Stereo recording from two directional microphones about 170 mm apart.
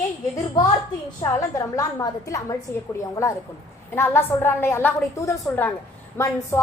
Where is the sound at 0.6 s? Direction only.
20° left (ahead or behind).